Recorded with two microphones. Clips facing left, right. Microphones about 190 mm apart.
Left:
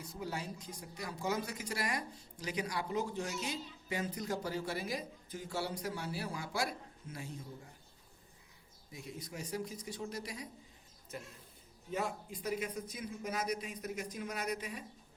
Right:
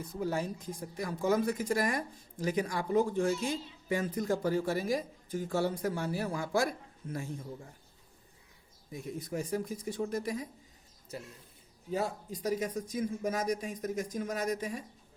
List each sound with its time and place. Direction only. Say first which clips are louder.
0.0 s speech: right 8 dB; 50° right (ahead or behind)
8.9 s speech: right 8 dB; 50° right (ahead or behind)
11.9 s speech: right 4 dB; 35° right (ahead or behind)